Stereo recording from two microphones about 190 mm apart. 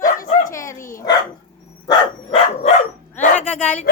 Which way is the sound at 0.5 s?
15° left (ahead or behind).